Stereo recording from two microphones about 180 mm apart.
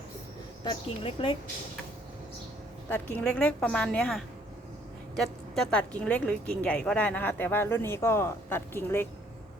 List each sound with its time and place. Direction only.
0.6 s a woman's voice: 30° left (ahead or behind)
2.9 s a woman's voice: 10° left (ahead or behind)